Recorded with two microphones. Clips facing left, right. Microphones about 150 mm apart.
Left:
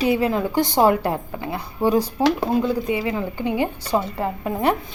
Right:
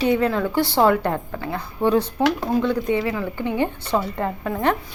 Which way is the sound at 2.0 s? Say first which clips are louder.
Left 1 dB; 25° left (ahead or behind).